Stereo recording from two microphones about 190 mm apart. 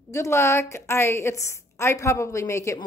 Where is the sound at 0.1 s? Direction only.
15° left (ahead or behind).